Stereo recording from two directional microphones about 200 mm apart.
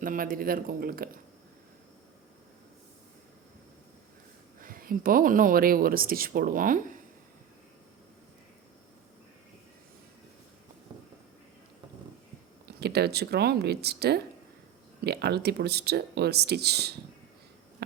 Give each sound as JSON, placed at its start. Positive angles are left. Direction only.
{"t": 0.0, "sound": "speech", "side_deg": -45}
{"t": 4.6, "sound": "speech", "side_deg": -45}
{"t": 12.6, "sound": "speech", "side_deg": -55}